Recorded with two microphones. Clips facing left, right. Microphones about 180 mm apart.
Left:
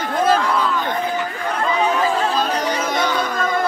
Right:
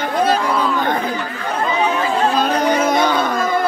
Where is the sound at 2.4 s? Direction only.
55° right (ahead or behind).